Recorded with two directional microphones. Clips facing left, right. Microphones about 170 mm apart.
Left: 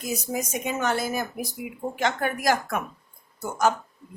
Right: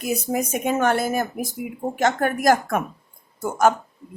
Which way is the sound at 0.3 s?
55° right (ahead or behind).